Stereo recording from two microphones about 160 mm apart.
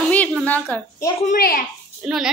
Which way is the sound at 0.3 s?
5° left (ahead or behind).